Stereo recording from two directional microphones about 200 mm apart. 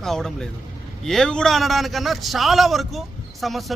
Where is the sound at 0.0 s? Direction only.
Centre (ahead or behind).